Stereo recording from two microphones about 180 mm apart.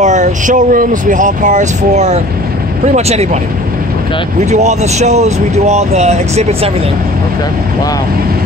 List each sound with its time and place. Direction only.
0.0 s speech: 40° right (ahead or behind)
4.5 s speech: 40° right (ahead or behind)